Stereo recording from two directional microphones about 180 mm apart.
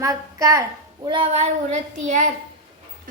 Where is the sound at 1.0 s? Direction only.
30° right (ahead or behind).